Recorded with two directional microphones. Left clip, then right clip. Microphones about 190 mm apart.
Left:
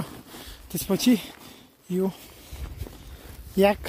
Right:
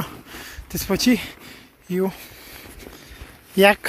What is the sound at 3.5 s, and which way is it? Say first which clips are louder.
Speech: right 6 dB; 10° left (ahead or behind).